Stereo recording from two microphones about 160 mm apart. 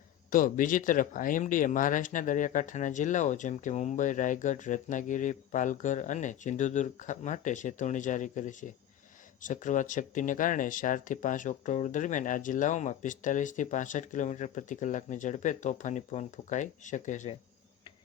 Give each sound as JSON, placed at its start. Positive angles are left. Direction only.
{"t": 0.3, "sound": "speech", "side_deg": 60}